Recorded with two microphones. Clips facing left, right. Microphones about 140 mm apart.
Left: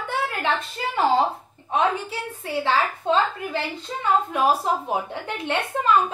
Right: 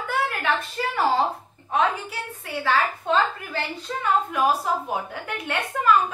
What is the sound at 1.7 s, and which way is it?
A woman's voice, 30° left (ahead or behind).